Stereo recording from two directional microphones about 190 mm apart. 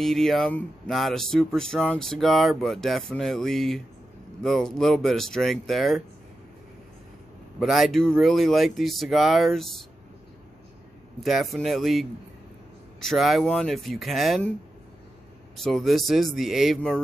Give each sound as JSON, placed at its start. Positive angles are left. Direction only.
{"t": 0.0, "sound": "speech", "side_deg": 0}
{"t": 7.6, "sound": "speech", "side_deg": 0}
{"t": 11.2, "sound": "speech", "side_deg": 0}
{"t": 13.1, "sound": "speech", "side_deg": 0}
{"t": 15.5, "sound": "speech", "side_deg": 0}